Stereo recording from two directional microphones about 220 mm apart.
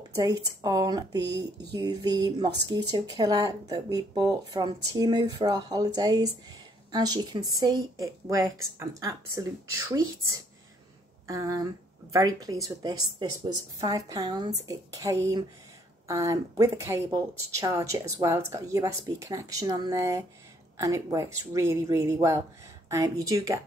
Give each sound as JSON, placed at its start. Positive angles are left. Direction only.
{"t": 0.1, "sound": "speech", "side_deg": -15}